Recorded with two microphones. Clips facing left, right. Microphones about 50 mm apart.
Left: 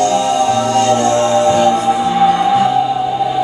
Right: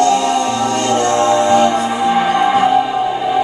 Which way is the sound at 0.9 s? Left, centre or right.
Right.